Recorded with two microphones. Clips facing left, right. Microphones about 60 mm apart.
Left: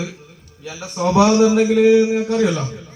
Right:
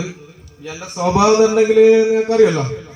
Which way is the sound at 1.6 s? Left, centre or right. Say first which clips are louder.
Right 3 dB; right.